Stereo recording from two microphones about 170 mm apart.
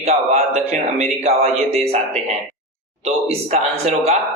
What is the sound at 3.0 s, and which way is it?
Speech, 35° right (ahead or behind).